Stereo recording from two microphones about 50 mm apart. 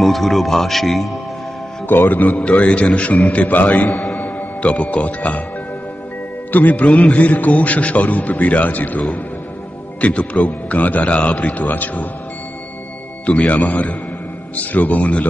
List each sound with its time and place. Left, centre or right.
0.0 s speech: centre
1.9 s a man's voice: left
2.2 s a man's voice: left
4.1 s music: left
6.5 s a man's voice: left
13.2 s a man's voice: left